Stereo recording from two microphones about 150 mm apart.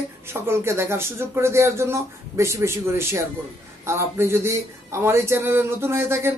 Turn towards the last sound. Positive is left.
turn(degrees=-15)  # may be behind; listen again after turning